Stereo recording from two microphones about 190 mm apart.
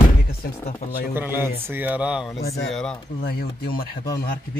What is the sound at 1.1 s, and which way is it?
A man's voice, 10° right (ahead or behind).